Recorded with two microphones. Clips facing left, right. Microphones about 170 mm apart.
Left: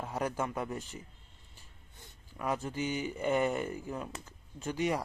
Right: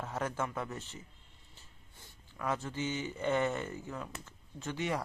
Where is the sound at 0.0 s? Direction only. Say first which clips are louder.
Left 2 dB; 15° left (ahead or behind).